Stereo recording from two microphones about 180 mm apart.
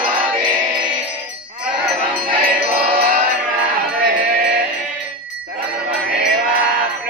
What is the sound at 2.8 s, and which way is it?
Music, 55° right (ahead or behind).